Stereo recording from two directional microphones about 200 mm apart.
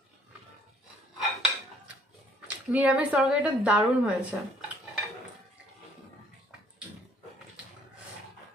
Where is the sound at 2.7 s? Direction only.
5° right (ahead or behind).